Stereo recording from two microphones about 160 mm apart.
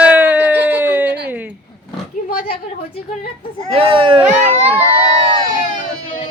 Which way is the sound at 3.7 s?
35° right (ahead or behind).